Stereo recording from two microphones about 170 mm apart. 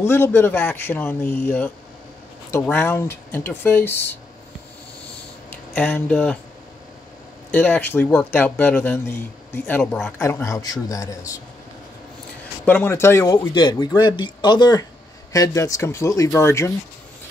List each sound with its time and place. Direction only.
0.0 s speech: 15° left (ahead or behind)
5.5 s speech: 10° left (ahead or behind)
7.5 s speech: 10° left (ahead or behind)
12.6 s speech: 10° left (ahead or behind)